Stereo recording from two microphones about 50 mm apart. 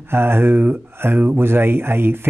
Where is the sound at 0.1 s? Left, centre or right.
Right.